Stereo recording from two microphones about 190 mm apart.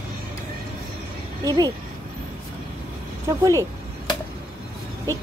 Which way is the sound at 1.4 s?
20° right (ahead or behind).